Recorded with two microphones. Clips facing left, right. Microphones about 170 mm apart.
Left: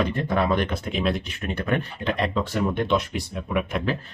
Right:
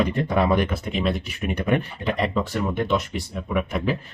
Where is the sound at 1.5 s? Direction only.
15° right (ahead or behind).